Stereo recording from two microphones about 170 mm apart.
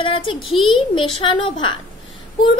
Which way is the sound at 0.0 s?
30° left (ahead or behind).